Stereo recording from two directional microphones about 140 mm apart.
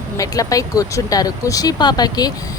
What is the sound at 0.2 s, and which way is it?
Speech, 25° left (ahead or behind).